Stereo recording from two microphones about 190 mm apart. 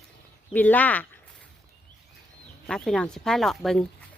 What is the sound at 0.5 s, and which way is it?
Speech, 10° left (ahead or behind).